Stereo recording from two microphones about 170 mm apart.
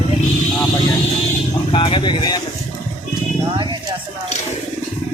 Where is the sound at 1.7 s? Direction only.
30° left (ahead or behind).